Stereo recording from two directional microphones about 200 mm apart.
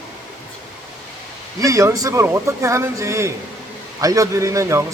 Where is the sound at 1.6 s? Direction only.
15° right (ahead or behind).